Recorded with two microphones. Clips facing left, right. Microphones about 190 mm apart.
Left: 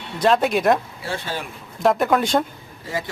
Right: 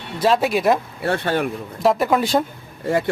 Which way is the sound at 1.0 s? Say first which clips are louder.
Right 8 dB; 60° right (ahead or behind).